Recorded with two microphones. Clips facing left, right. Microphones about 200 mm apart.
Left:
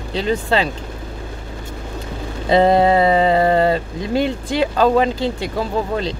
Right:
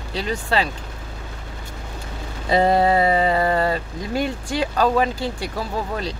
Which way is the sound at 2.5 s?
25° left (ahead or behind).